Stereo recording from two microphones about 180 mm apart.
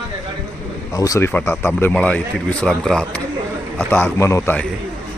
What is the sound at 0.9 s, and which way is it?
A man's voice, 20° left (ahead or behind).